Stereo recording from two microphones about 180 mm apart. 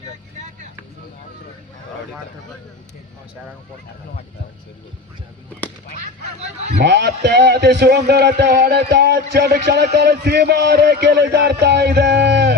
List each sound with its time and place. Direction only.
6.8 s a man's voice: 65° right (ahead or behind)